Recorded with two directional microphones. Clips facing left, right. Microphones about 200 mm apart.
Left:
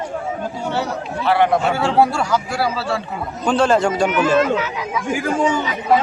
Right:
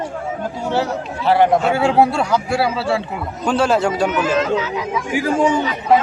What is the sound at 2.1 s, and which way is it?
Speech, 30° right (ahead or behind).